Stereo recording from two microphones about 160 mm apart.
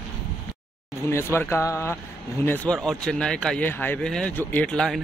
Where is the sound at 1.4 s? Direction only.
15° left (ahead or behind).